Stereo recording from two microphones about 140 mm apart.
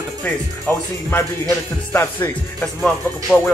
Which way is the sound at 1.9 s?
15° left (ahead or behind).